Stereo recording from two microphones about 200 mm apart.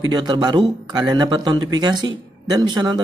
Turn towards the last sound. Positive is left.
turn(degrees=-20)  # may be behind; listen again after turning